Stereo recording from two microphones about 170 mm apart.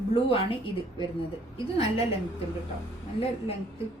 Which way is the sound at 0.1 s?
30° left (ahead or behind).